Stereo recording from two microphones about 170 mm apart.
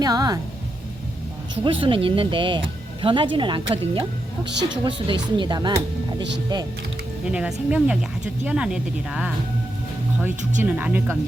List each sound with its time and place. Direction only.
0.0 s speech: 20° right (ahead or behind)
1.6 s speech: 30° right (ahead or behind)
7.3 s speech: 5° right (ahead or behind)
10.6 s speech: 10° right (ahead or behind)